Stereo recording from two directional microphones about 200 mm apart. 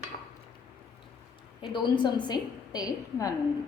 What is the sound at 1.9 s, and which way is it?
A woman's voice, 20° left (ahead or behind).